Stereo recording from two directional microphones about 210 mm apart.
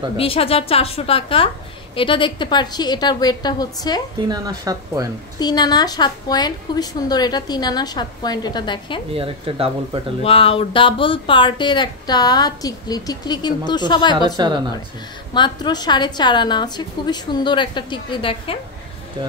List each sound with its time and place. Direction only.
0.2 s speech: 25° left (ahead or behind)
4.3 s speech: 20° right (ahead or behind)
5.4 s speech: 20° left (ahead or behind)
9.1 s speech: 25° right (ahead or behind)
10.2 s speech: 25° left (ahead or behind)
14.3 s speech: 20° right (ahead or behind)
15.3 s speech: 20° left (ahead or behind)